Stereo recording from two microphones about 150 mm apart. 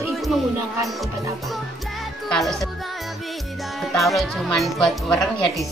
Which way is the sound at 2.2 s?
Centre (ahead or behind).